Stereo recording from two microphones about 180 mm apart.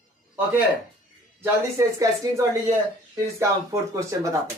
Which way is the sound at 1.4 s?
15° right (ahead or behind).